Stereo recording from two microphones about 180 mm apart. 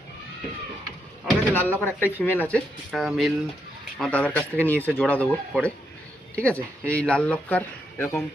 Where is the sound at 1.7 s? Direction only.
10° left (ahead or behind).